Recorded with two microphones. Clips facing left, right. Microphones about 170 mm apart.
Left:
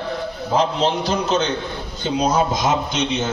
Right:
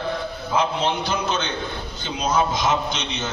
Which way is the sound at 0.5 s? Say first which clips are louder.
Left 3 dB; 35° left (ahead or behind).